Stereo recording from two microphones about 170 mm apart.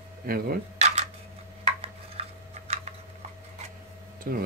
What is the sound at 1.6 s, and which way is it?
Stir, 35° right (ahead or behind).